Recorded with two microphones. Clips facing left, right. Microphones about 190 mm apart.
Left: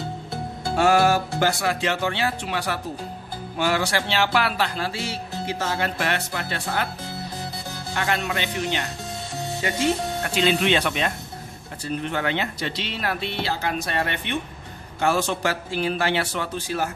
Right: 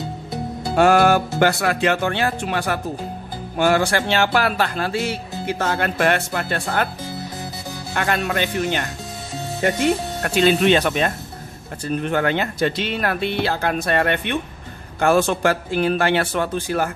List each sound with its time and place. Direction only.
0.7 s speech: 60° right (ahead or behind)
7.9 s speech: 55° right (ahead or behind)
10.2 s speech: 50° right (ahead or behind)